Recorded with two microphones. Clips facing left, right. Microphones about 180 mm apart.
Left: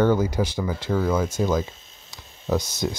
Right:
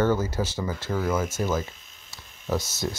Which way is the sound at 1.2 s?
15° left (ahead or behind).